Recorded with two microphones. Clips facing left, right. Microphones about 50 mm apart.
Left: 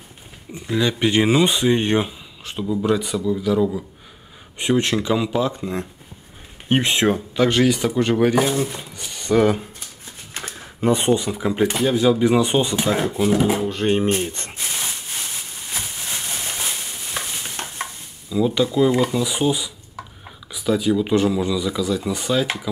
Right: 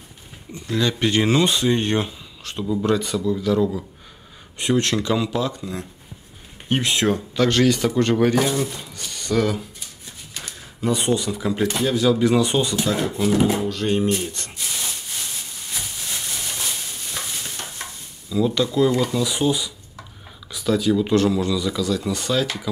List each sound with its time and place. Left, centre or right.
0.5 s speech: centre
13.1 s speech: centre
13.7 s speech: left
14.1 s rub: left
15.7 s a sound: left
18.3 s speech: centre